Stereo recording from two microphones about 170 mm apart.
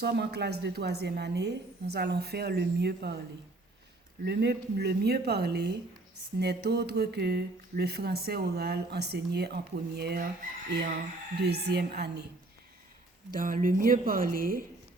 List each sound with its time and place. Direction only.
0.0 s speech: 75° right (ahead or behind)
4.2 s speech: 75° right (ahead or behind)
11.4 s speech: 75° right (ahead or behind)
13.3 s speech: 55° right (ahead or behind)